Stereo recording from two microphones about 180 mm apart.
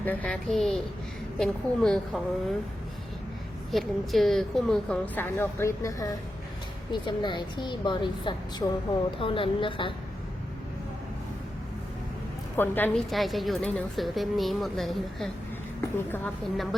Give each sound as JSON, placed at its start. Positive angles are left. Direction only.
{"t": 0.0, "sound": "a woman's voice", "side_deg": 10}
{"t": 3.7, "sound": "a woman's voice", "side_deg": 0}
{"t": 12.5, "sound": "a woman's voice", "side_deg": 10}